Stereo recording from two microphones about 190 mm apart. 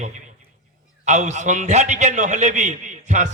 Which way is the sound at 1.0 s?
35° right (ahead or behind).